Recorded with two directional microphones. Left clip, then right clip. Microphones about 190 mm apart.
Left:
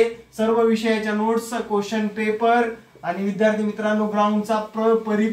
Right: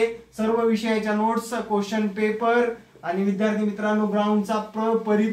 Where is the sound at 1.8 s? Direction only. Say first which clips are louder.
Even; 20° right (ahead or behind).